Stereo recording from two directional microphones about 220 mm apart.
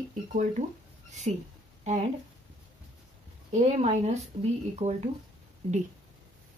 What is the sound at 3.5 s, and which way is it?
Speech, 30° right (ahead or behind).